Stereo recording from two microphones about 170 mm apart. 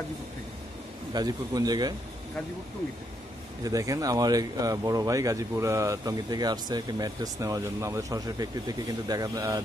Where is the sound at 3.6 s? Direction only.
20° right (ahead or behind).